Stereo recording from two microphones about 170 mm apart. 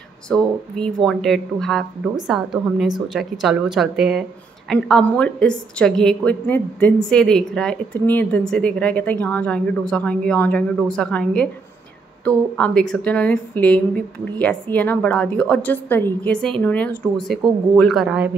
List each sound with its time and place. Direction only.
0.3 s a woman's voice: 5° left (ahead or behind)